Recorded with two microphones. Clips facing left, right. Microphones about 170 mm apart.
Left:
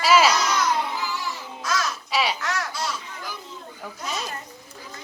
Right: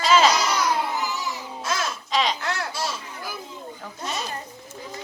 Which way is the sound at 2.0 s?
10° left (ahead or behind).